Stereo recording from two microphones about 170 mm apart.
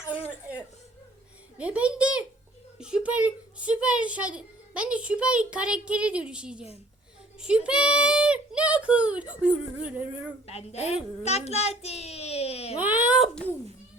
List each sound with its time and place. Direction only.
1.5 s a child's voice: 5° right (ahead or behind)
10.4 s a child's voice: 35° left (ahead or behind)
12.8 s a sound: 10° right (ahead or behind)